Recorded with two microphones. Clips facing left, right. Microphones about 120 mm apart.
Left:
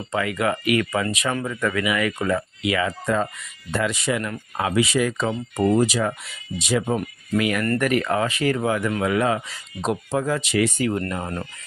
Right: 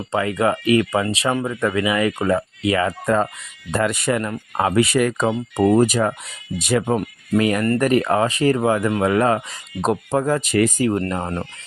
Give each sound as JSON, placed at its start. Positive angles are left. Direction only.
{"t": 0.1, "sound": "speech", "side_deg": -35}
{"t": 7.3, "sound": "speech", "side_deg": -35}
{"t": 10.8, "sound": "speech", "side_deg": -35}